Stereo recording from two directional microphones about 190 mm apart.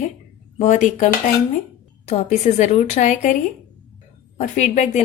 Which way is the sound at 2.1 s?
40° left (ahead or behind).